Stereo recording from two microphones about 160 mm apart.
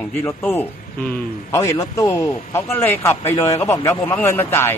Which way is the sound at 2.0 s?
15° left (ahead or behind).